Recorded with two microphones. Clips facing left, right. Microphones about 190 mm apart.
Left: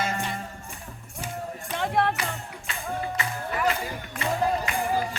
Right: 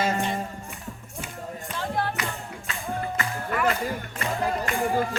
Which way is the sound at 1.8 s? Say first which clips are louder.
Left 4 dB; 65° left (ahead or behind).